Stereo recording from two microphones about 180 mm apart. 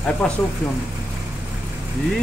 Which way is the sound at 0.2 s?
5° left (ahead or behind).